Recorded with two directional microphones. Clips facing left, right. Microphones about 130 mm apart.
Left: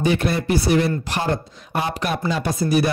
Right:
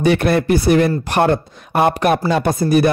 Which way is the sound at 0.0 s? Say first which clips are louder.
Right 6 dB; 65° right (ahead or behind).